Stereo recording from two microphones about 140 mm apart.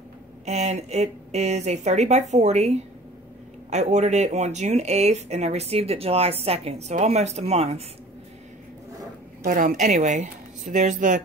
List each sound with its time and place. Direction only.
0.5 s speech: 55° right (ahead or behind)
9.4 s speech: 70° right (ahead or behind)